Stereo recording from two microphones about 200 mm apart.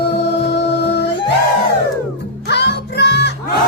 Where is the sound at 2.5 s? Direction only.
55° left (ahead or behind).